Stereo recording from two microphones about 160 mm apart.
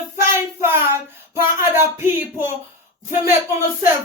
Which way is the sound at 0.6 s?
15° right (ahead or behind).